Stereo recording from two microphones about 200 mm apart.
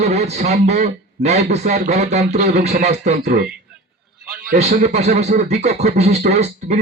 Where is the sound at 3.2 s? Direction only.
55° right (ahead or behind).